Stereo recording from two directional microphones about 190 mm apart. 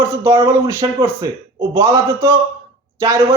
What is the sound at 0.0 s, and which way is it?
A man's voice, 15° right (ahead or behind).